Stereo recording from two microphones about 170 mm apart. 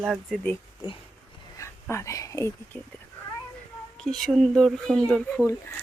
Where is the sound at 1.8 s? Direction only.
15° left (ahead or behind).